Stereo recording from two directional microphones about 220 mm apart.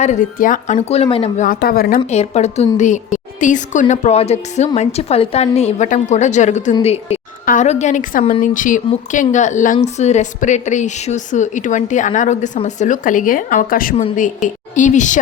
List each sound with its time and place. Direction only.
0.0 s a woman's voice: 35° left (ahead or behind)
1.5 s a woman's voice: 45° left (ahead or behind)
2.0 s a woman's voice: 30° left (ahead or behind)